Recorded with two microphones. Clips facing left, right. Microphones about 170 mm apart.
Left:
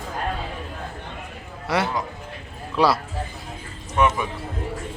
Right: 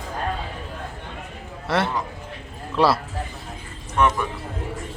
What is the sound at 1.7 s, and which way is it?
Speech, centre (ahead or behind).